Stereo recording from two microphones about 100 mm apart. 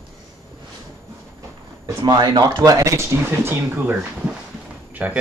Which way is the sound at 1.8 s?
40° right (ahead or behind).